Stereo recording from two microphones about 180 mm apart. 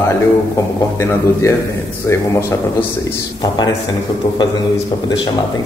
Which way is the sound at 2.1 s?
15° left (ahead or behind).